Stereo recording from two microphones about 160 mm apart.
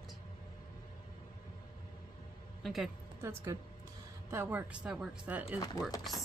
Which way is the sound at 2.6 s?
Centre (ahead or behind).